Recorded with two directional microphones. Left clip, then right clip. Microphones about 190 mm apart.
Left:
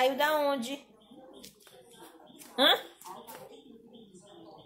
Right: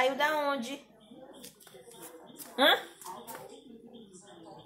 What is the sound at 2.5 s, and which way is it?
Speech, 15° left (ahead or behind).